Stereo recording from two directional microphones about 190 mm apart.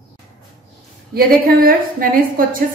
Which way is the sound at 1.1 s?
50° right (ahead or behind).